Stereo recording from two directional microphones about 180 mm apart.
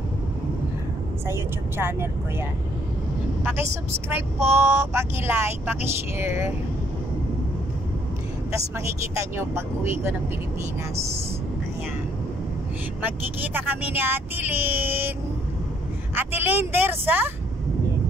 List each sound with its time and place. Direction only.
1.2 s speech: 15° right (ahead or behind)
4.1 s speech: 15° right (ahead or behind)
8.5 s speech: 15° right (ahead or behind)
13.0 s speech: 10° right (ahead or behind)
16.2 s speech: 10° right (ahead or behind)